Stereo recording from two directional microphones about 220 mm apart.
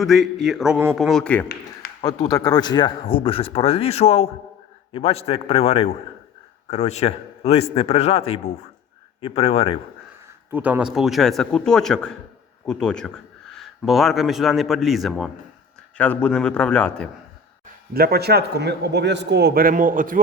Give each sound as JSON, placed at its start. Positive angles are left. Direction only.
{"t": 0.0, "sound": "a man's voice", "side_deg": 0}
{"t": 2.0, "sound": "speech", "side_deg": 15}
{"t": 10.5, "sound": "a man's voice", "side_deg": -5}
{"t": 17.9, "sound": "a man's voice", "side_deg": -45}